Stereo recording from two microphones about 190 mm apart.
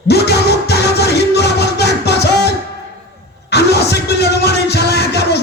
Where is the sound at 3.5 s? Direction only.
60° left (ahead or behind).